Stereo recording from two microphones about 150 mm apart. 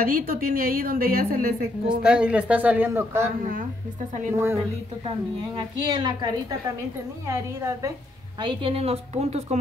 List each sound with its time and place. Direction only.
0.0 s a woman's voice: 75° right (ahead or behind)
2.0 s speech: 5° right (ahead or behind)
4.3 s speech: 15° right (ahead or behind)
5.6 s a woman's voice: 30° right (ahead or behind)
7.2 s a woman's voice: 20° right (ahead or behind)
8.4 s a woman's voice: 35° right (ahead or behind)